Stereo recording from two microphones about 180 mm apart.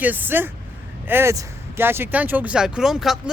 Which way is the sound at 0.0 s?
10° right (ahead or behind).